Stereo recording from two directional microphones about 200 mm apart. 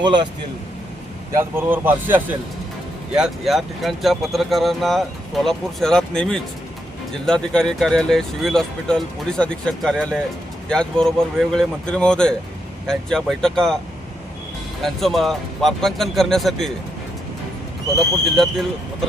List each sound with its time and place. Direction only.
0.0 s speech: 20° right (ahead or behind)
1.3 s speech: 10° right (ahead or behind)
14.8 s speech: centre (ahead or behind)
17.9 s speech: centre (ahead or behind)